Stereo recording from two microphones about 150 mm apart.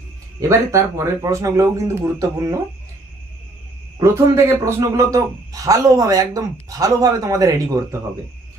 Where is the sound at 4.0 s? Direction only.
20° right (ahead or behind).